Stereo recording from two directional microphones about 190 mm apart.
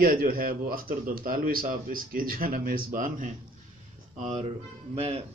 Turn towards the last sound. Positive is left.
turn(degrees=-35)  # may be behind; listen again after turning